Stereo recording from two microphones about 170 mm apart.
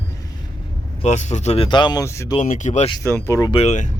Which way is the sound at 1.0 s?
45° left (ahead or behind).